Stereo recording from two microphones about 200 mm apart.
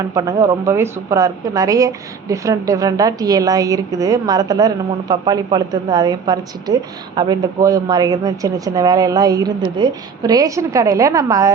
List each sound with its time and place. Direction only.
0.1 s a woman's voice: 15° right (ahead or behind)